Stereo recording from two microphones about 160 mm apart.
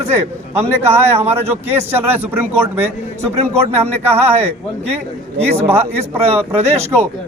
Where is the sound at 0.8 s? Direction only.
40° right (ahead or behind).